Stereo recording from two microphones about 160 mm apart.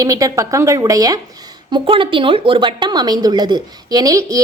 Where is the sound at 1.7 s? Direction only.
35° right (ahead or behind).